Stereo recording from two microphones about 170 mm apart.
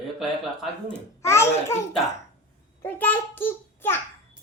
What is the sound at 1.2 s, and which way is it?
Speech, 15° left (ahead or behind).